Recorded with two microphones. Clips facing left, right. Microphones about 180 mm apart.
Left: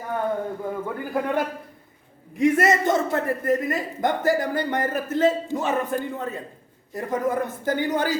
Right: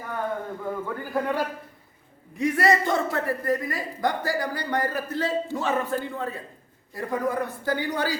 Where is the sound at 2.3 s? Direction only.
20° left (ahead or behind).